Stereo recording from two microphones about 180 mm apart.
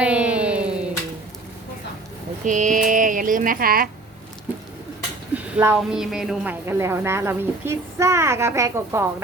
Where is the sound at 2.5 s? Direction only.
45° right (ahead or behind).